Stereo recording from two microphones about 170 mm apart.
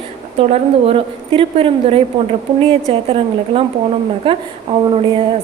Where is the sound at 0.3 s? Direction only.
35° right (ahead or behind).